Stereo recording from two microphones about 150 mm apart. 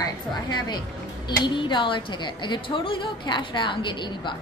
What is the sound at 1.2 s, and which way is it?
A woman's voice, 30° left (ahead or behind).